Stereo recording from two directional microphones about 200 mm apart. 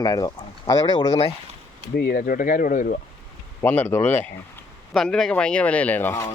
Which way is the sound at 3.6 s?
10° left (ahead or behind).